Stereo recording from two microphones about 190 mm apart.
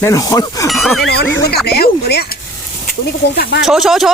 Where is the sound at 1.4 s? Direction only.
55° left (ahead or behind).